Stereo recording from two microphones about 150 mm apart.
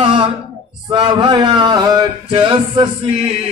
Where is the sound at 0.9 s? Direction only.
30° right (ahead or behind).